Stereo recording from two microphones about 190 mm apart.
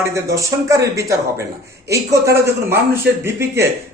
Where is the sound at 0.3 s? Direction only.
15° right (ahead or behind).